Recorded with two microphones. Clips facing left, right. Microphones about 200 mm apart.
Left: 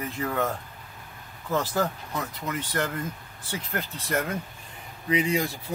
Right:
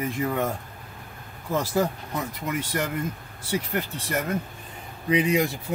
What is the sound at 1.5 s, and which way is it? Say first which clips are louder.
Speech: right 2 dB; 10° right (ahead or behind).